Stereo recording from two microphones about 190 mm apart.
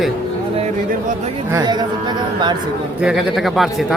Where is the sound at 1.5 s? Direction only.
20° right (ahead or behind).